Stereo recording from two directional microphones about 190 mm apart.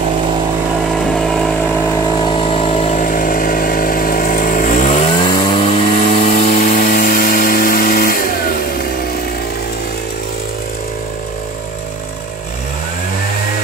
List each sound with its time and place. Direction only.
1.1 s vehicle: centre (ahead or behind)
2.2 s vehicle: 30° left (ahead or behind)
5.0 s vehicle: 25° left (ahead or behind)
6.4 s a sound: 45° left (ahead or behind)